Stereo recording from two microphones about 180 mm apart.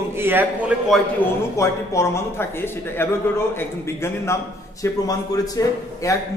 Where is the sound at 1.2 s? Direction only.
10° left (ahead or behind).